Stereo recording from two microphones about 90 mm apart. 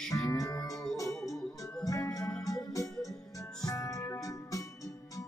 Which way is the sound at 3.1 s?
40° left (ahead or behind).